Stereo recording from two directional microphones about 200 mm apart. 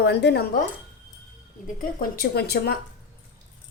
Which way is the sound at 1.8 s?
45° left (ahead or behind).